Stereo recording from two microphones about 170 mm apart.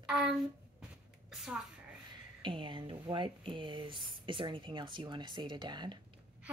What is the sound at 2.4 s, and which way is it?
Speech, 30° right (ahead or behind).